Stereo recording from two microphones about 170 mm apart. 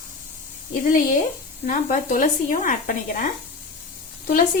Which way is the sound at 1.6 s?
50° left (ahead or behind).